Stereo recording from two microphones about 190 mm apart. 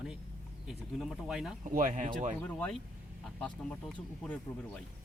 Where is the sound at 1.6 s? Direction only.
45° right (ahead or behind).